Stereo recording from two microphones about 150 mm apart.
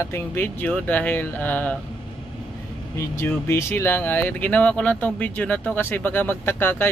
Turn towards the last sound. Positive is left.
turn(degrees=15)  # may be behind; listen again after turning